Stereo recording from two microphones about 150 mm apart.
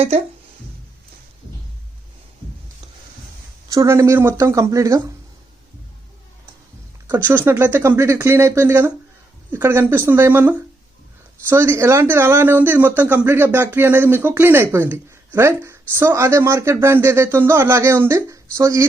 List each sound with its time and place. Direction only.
3.7 s speech: 20° right (ahead or behind)
7.3 s speech: 10° right (ahead or behind)